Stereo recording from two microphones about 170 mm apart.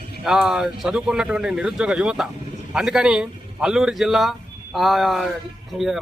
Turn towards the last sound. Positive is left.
turn(degrees=0)  # may be behind; listen again after turning